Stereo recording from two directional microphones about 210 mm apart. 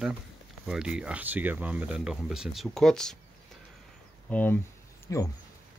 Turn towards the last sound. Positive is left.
turn(degrees=15)  # may be behind; listen again after turning